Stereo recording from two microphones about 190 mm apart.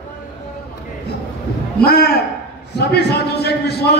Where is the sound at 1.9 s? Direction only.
55° left (ahead or behind).